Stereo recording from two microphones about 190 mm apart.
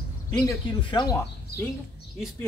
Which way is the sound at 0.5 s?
20° left (ahead or behind).